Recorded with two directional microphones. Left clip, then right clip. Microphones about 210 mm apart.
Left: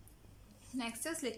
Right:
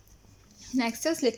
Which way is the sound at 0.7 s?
45° right (ahead or behind).